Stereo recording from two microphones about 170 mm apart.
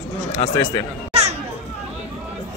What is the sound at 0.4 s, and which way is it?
Speech, 35° left (ahead or behind).